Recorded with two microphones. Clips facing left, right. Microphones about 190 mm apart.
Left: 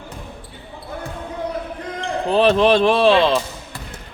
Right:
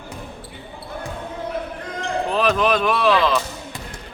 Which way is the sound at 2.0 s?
30° left (ahead or behind).